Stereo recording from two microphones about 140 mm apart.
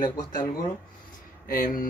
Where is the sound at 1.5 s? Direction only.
90° left.